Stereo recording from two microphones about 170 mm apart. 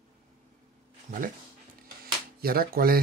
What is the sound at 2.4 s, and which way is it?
Speech, 60° right (ahead or behind).